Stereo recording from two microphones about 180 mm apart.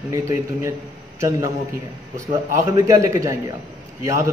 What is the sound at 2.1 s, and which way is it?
A man's voice, 15° right (ahead or behind).